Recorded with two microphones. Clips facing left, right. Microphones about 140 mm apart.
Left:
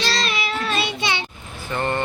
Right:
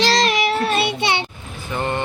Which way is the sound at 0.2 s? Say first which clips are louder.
Right 7 dB; 75° right (ahead or behind).